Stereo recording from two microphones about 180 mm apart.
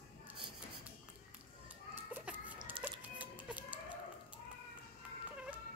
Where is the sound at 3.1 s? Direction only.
10° right (ahead or behind).